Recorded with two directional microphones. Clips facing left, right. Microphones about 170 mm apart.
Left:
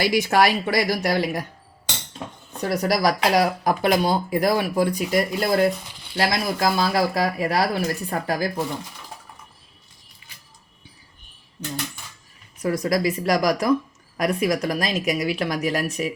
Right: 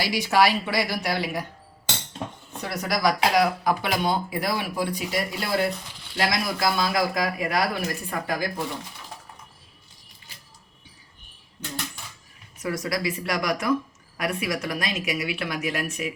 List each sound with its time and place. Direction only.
0.0 s speech: 50° left (ahead or behind)
2.6 s speech: 40° left (ahead or behind)
12.6 s speech: 40° left (ahead or behind)